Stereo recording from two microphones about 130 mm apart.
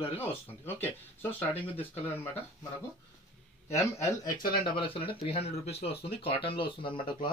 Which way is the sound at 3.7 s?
20° left (ahead or behind).